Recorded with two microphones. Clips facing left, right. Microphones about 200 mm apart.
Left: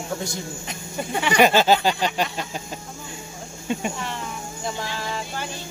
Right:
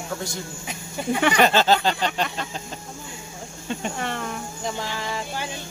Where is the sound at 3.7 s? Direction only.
10° left (ahead or behind).